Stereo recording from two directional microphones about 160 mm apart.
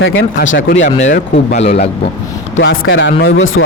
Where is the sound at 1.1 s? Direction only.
65° left (ahead or behind).